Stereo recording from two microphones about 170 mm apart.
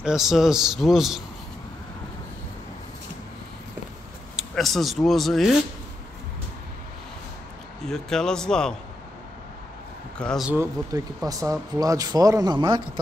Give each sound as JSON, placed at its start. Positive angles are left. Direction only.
{"t": 0.0, "sound": "speech", "side_deg": -5}
{"t": 4.4, "sound": "speech", "side_deg": 0}
{"t": 7.8, "sound": "speech", "side_deg": 5}
{"t": 10.1, "sound": "speech", "side_deg": 5}
{"t": 10.5, "sound": "speech", "side_deg": -15}